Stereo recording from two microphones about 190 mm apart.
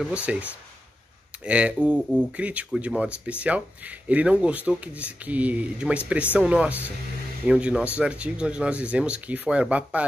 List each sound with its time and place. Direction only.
0.0 s speech: 5° right (ahead or behind)
1.4 s speech: 5° right (ahead or behind)